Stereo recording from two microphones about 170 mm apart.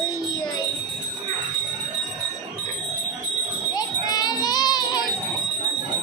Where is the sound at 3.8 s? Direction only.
25° left (ahead or behind).